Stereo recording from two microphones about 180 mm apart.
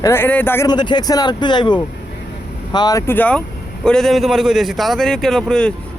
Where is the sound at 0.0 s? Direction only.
10° left (ahead or behind).